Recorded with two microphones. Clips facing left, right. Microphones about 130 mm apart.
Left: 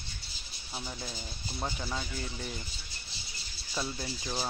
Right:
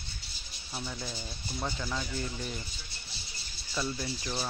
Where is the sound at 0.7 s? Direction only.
10° left (ahead or behind).